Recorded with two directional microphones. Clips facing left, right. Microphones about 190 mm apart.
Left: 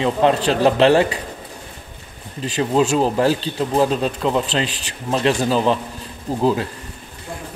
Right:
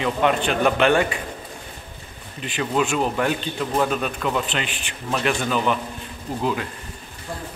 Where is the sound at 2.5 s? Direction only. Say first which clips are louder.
Left 5 dB; 35° left (ahead or behind).